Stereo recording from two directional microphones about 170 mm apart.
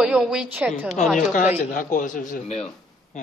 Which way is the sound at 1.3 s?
50° left (ahead or behind).